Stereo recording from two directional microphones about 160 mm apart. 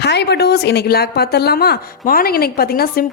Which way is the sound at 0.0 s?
90° left.